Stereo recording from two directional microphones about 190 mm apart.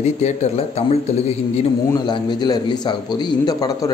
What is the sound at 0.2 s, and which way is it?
A man's voice, 35° left (ahead or behind).